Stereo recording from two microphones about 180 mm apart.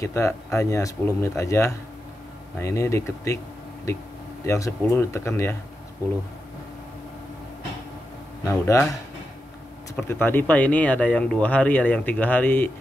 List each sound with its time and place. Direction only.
0.0 s speech: 15° left (ahead or behind)
4.5 s speech: 15° left (ahead or behind)
8.5 s speech: 15° left (ahead or behind)
9.9 s speech: 10° left (ahead or behind)